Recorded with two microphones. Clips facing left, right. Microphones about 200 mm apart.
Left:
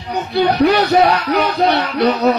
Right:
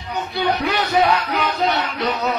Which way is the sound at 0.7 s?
45° left (ahead or behind).